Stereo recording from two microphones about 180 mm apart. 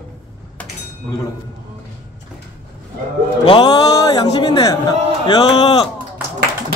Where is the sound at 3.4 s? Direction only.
25° left (ahead or behind).